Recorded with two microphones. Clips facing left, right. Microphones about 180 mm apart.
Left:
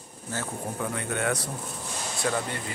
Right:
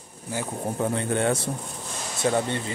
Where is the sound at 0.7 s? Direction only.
30° right (ahead or behind).